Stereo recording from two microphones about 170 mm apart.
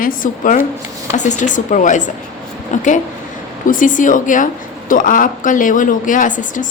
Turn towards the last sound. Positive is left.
turn(degrees=50)  # may be behind; listen again after turning